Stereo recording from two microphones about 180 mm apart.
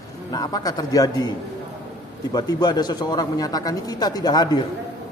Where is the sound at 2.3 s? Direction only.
20° left (ahead or behind).